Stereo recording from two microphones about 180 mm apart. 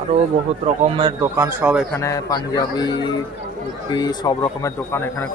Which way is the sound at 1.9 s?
15° left (ahead or behind).